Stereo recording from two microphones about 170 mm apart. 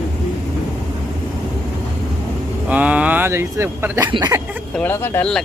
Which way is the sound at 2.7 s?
10° right (ahead or behind).